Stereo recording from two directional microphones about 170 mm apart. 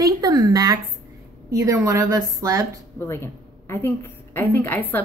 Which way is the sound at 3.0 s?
15° left (ahead or behind).